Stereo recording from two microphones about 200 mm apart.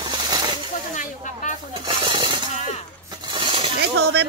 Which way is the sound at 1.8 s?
25° right (ahead or behind).